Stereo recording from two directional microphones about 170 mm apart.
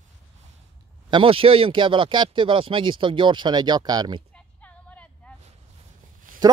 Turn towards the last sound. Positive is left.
turn(degrees=-55)  # may be behind; listen again after turning